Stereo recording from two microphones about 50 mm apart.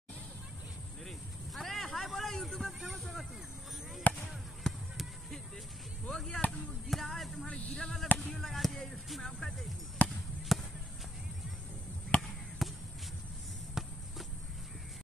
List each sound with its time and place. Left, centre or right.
1.0 s vehicle: centre
2.8 s music: centre
4.1 s a sound: left
4.6 s basketball bounce: centre
6.0 s chop: centre
6.9 s music: centre
7.4 s speech: left
7.8 s speech: centre
8.1 s chop: left
8.4 s speech: centre
10.5 s basketball bounce: centre
12.2 s basketball bounce: centre
13.8 s walk: centre